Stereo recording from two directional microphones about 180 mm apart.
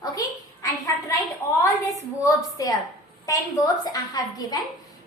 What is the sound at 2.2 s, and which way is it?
A woman's voice, 20° left (ahead or behind).